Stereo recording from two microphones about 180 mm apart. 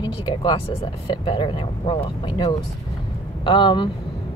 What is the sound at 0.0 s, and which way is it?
Speech, 25° left (ahead or behind).